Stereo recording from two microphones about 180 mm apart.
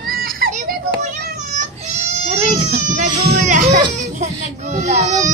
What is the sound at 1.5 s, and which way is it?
Goat, 40° right (ahead or behind).